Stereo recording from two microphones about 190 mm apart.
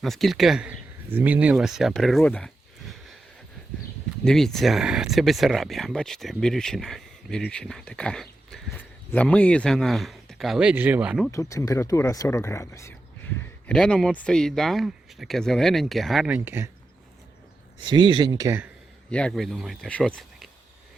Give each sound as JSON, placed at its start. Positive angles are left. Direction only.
{"t": 0.0, "sound": "speech", "side_deg": 0}
{"t": 4.2, "sound": "speech", "side_deg": 5}
{"t": 11.3, "sound": "speech", "side_deg": 15}
{"t": 17.8, "sound": "speech", "side_deg": -25}
{"t": 19.1, "sound": "speech", "side_deg": 5}